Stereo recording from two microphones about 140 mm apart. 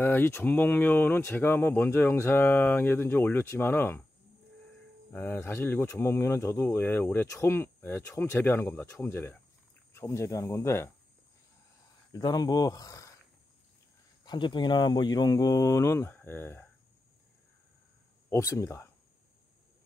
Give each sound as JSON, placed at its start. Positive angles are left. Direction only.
{"t": 0.0, "sound": "speech", "side_deg": 15}
{"t": 5.1, "sound": "speech", "side_deg": 15}
{"t": 12.1, "sound": "speech", "side_deg": 30}
{"t": 14.2, "sound": "speech", "side_deg": 35}
{"t": 18.3, "sound": "speech", "side_deg": 20}